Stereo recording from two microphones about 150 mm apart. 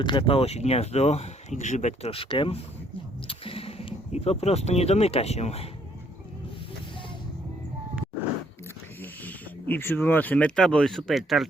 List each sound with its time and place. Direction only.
0.0 s speech: 35° left (ahead or behind)
9.0 s speech: 10° left (ahead or behind)